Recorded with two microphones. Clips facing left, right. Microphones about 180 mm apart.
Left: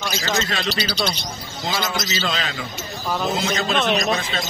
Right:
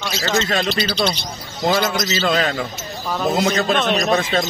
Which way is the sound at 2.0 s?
55° right (ahead or behind).